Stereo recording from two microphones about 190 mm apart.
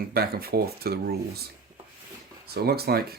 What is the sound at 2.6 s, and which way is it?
Speech, 55° right (ahead or behind).